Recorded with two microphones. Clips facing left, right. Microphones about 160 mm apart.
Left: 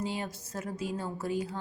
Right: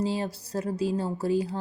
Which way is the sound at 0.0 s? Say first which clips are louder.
Right 6 dB; 35° right (ahead or behind).